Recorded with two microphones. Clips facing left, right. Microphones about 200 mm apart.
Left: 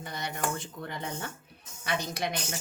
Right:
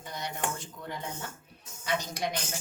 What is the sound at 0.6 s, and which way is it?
A woman's voice, 65° left (ahead or behind).